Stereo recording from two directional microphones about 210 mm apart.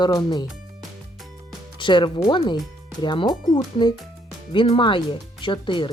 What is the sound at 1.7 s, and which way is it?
Speech, 25° left (ahead or behind).